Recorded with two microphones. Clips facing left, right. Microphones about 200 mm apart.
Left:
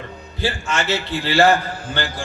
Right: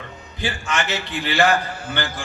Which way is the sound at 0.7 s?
15° right (ahead or behind).